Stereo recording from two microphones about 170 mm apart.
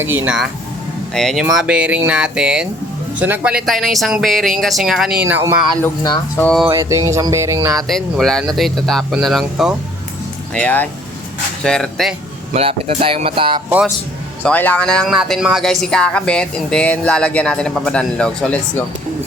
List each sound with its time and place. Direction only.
0.0 s speech: 10° right (ahead or behind)
1.1 s speech: centre (ahead or behind)
5.2 s speech: 15° right (ahead or behind)
5.8 s speech: 20° left (ahead or behind)
6.4 s speech: 5° left (ahead or behind)
6.7 s speech: 20° right (ahead or behind)
7.9 s speech: centre (ahead or behind)
12.5 s speech: 35° right (ahead or behind)
13.7 s speech: 10° right (ahead or behind)
14.4 s speech: 10° left (ahead or behind)